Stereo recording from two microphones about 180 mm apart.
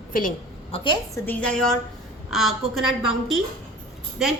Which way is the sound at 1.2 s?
5° left (ahead or behind).